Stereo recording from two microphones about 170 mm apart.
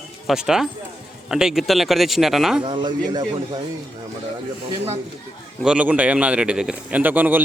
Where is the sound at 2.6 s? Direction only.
30° right (ahead or behind).